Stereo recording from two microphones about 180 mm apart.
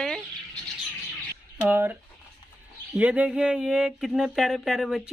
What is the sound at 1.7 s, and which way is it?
Speech, 10° right (ahead or behind).